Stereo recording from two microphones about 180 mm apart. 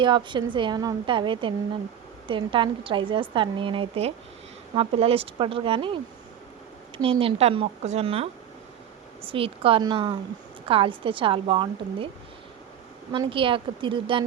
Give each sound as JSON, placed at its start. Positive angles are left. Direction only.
{"t": 0.0, "sound": "a woman's voice", "side_deg": -25}
{"t": 13.1, "sound": "a woman's voice", "side_deg": -30}